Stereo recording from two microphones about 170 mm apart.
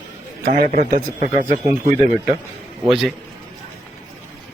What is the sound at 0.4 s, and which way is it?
A man's voice, 55° right (ahead or behind).